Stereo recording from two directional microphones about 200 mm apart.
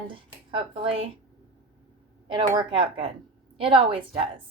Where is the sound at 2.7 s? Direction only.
25° right (ahead or behind).